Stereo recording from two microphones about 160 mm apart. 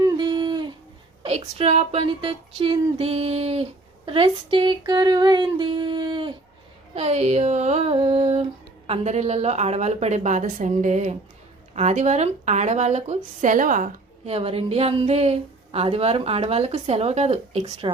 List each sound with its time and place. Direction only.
0.2 s a sound: 30° right (ahead or behind)
1.2 s speech: 40° right (ahead or behind)
6.9 s a woman's voice: 40° right (ahead or behind)
14.3 s speech: 40° right (ahead or behind)